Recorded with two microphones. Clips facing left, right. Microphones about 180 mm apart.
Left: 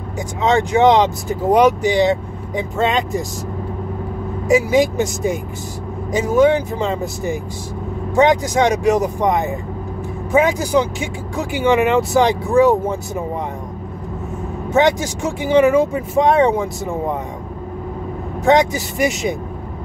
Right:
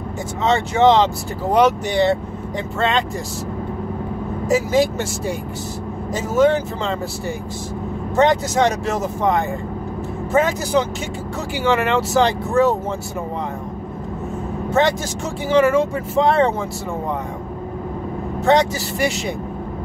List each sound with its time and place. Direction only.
0.4 s speech: 15° left (ahead or behind)
4.5 s speech: 15° left (ahead or behind)
14.7 s speech: 15° left (ahead or behind)
18.4 s speech: 15° left (ahead or behind)